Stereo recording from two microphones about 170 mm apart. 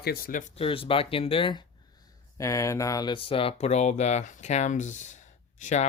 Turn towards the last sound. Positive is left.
turn(degrees=45)  # may be behind; listen again after turning